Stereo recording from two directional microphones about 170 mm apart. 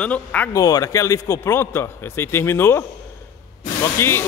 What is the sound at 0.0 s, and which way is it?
Speech, 10° left (ahead or behind).